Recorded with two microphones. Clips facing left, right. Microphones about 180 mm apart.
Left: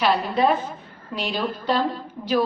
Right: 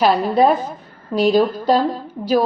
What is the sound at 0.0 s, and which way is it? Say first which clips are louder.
A woman's voice: right 6 dB; 40° right (ahead or behind).